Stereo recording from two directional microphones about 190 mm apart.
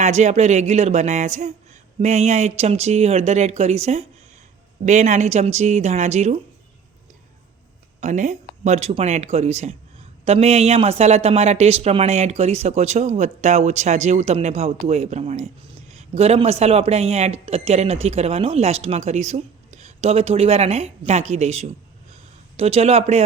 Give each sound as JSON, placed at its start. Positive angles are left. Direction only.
{"t": 0.0, "sound": "speech", "side_deg": -35}
{"t": 8.0, "sound": "speech", "side_deg": -40}